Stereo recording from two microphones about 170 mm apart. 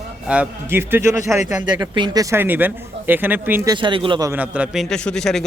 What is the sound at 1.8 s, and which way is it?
Speech, 25° right (ahead or behind).